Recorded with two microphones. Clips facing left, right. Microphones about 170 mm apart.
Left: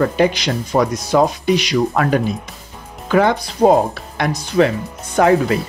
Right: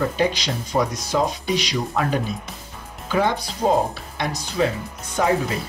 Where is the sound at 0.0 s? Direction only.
65° left (ahead or behind).